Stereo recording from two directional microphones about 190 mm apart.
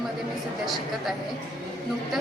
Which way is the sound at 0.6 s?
Centre (ahead or behind).